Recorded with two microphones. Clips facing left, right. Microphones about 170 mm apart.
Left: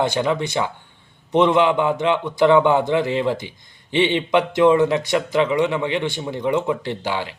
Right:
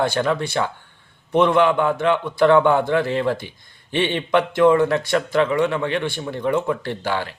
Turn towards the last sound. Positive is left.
turn(degrees=15)  # may be behind; listen again after turning